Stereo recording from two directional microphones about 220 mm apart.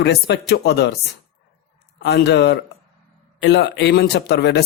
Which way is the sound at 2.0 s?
55° left (ahead or behind).